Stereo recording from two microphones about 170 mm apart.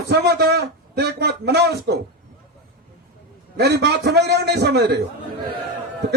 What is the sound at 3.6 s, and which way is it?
A man's voice, 75° right (ahead or behind).